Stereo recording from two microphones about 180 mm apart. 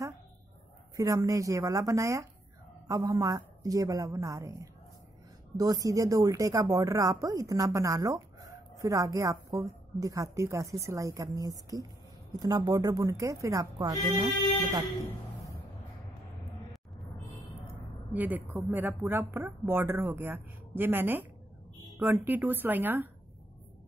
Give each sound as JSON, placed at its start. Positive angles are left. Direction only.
{"t": 0.9, "sound": "a woman's voice", "side_deg": -20}
{"t": 18.1, "sound": "speech", "side_deg": -10}